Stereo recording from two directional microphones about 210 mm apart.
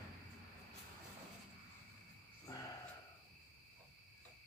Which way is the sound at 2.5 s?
15° left (ahead or behind).